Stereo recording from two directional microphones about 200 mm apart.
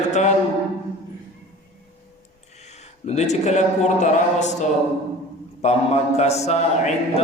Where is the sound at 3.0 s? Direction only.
35° left (ahead or behind).